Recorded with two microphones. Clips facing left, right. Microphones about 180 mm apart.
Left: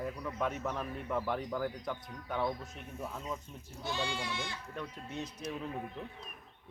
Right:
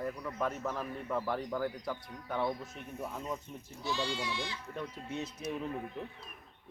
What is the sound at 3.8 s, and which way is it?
Speech, 50° left (ahead or behind).